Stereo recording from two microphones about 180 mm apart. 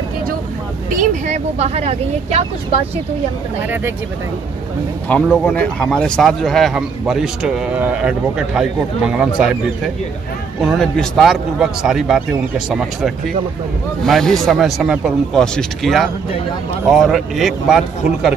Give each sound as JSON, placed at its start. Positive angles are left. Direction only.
{"t": 1.2, "sound": "speech", "side_deg": -40}
{"t": 5.0, "sound": "speech", "side_deg": 5}
{"t": 10.6, "sound": "speech", "side_deg": 0}